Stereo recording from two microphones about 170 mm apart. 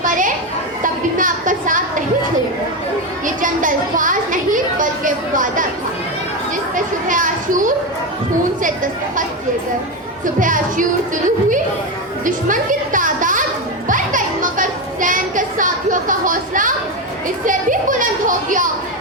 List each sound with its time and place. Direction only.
0.0 s children playing: 50° right (ahead or behind)
0.8 s a sound: 50° right (ahead or behind)
3.2 s a sound: 50° right (ahead or behind)
7.1 s children playing: 50° right (ahead or behind)
10.4 s speech: 50° right (ahead or behind)
12.2 s music: 50° right (ahead or behind)